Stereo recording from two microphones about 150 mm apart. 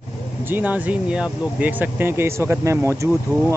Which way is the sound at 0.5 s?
10° right (ahead or behind).